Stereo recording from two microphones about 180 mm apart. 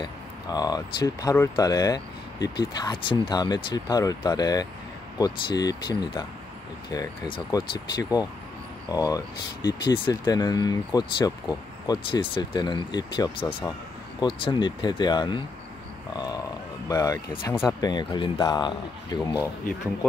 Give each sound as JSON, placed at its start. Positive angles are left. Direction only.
{"t": 0.0, "sound": "speech", "side_deg": 20}
{"t": 16.8, "sound": "speech", "side_deg": 20}